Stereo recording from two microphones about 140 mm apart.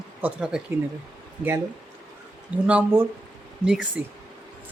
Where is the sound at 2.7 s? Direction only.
10° right (ahead or behind).